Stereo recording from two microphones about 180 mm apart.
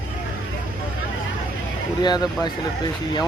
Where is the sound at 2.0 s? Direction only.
25° left (ahead or behind).